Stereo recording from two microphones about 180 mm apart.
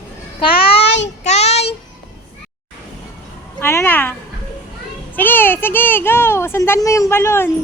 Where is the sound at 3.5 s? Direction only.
15° left (ahead or behind).